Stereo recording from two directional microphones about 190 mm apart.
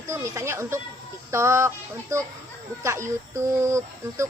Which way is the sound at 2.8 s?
15° right (ahead or behind).